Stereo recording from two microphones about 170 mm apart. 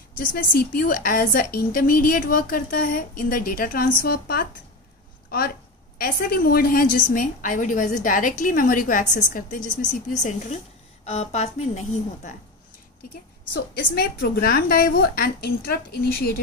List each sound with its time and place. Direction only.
0.2 s a woman's voice: 50° left (ahead or behind)
13.7 s a woman's voice: 60° left (ahead or behind)